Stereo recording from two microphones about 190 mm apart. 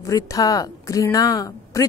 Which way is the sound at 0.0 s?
15° left (ahead or behind).